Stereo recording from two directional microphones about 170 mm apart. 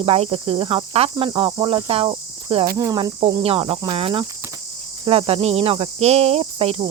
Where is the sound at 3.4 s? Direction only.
35° right (ahead or behind).